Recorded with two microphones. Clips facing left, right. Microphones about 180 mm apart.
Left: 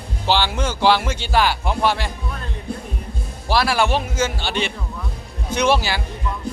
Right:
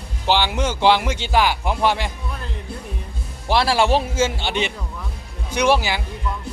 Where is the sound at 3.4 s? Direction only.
25° right (ahead or behind).